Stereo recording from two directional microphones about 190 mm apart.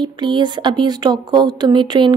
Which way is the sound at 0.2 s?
25° right (ahead or behind).